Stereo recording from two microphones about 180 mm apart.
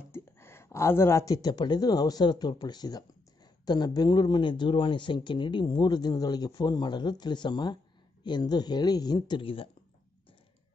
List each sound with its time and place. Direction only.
0.1 s speech: 15° left (ahead or behind); by 9.7 s 30° left (ahead or behind)